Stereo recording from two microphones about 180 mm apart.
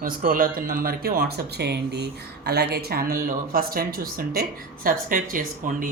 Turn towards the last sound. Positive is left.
turn(degrees=-50)  # may be behind; listen again after turning